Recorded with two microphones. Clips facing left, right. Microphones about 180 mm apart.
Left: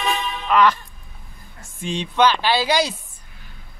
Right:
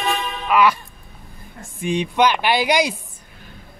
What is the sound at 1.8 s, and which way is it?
Speech, 15° right (ahead or behind).